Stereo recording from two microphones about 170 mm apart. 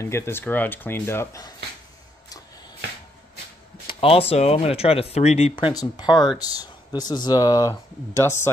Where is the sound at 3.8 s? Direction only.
35° left (ahead or behind).